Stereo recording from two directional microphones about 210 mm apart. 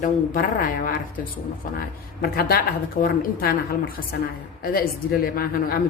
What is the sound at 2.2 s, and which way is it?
A woman's voice, 45° left (ahead or behind).